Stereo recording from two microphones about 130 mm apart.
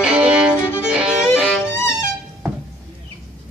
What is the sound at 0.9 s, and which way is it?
Music, 5° right (ahead or behind).